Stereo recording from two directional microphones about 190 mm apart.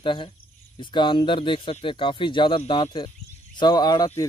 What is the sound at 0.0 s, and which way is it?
Speech, 25° left (ahead or behind).